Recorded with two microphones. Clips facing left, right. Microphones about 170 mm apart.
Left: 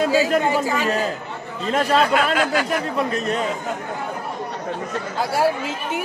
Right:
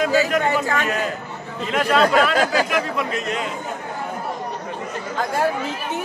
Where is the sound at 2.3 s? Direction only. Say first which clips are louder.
Right 1 dB; 40° right (ahead or behind).